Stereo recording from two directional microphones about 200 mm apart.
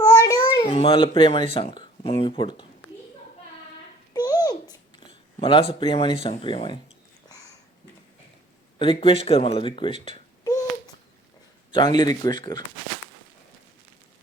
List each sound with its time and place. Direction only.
0.0 s baby cry: 20° left (ahead or behind)
0.5 s speech: 25° left (ahead or behind)
4.1 s a sound: 20° left (ahead or behind)
6.2 s speech: 25° left (ahead or behind)
7.3 s a sound: 15° left (ahead or behind)
8.8 s speech: 25° left (ahead or behind)
11.7 s speech: 25° left (ahead or behind)